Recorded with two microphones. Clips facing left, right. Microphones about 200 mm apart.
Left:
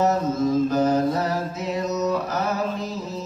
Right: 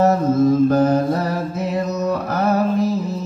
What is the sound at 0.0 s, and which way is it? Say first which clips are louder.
Mantra: right 6 dB; 55° right (ahead or behind).